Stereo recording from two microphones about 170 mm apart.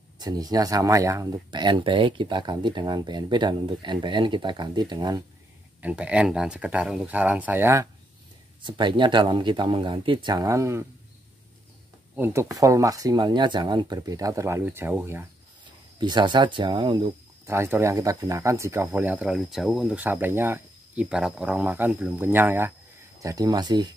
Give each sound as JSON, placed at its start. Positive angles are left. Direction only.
{"t": 0.2, "sound": "speech", "side_deg": -25}
{"t": 5.8, "sound": "speech", "side_deg": -10}
{"t": 8.6, "sound": "speech", "side_deg": -25}
{"t": 12.2, "sound": "speech", "side_deg": -15}
{"t": 16.0, "sound": "speech", "side_deg": -25}
{"t": 17.5, "sound": "speech", "side_deg": -15}